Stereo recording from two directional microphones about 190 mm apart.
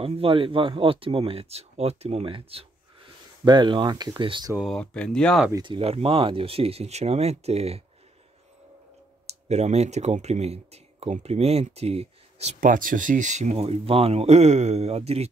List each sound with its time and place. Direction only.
0.0 s speech: 30° right (ahead or behind)
4.6 s speech: 5° left (ahead or behind)
5.5 s speech: 25° right (ahead or behind)
9.2 s speech: 35° right (ahead or behind)